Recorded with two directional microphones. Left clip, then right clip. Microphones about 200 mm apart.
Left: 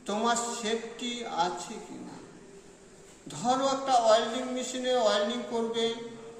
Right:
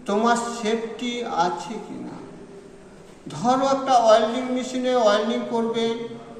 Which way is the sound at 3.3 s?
5° left (ahead or behind).